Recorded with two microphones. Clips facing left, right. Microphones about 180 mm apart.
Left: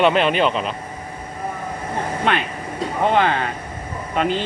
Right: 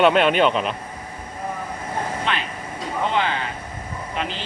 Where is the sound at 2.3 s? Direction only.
55° left (ahead or behind).